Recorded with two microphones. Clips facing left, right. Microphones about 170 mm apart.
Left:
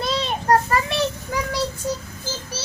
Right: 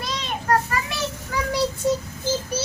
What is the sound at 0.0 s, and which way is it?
Child singing, 30° left (ahead or behind).